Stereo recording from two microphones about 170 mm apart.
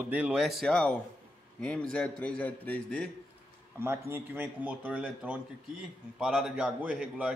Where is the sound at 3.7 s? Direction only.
15° right (ahead or behind).